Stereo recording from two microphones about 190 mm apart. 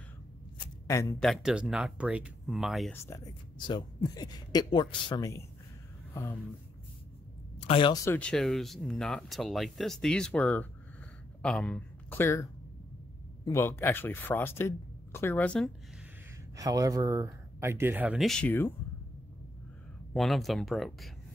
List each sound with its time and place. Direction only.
0.8 s speech: 15° left (ahead or behind)
1.2 s speech: centre (ahead or behind)
3.1 s speech: 15° left (ahead or behind)
7.6 s speech: 25° left (ahead or behind)
8.0 s speech: 10° left (ahead or behind)
13.5 s speech: 10° left (ahead or behind)
16.5 s speech: 15° right (ahead or behind); by 18.7 s 10° left (ahead or behind)
20.2 s speech: centre (ahead or behind)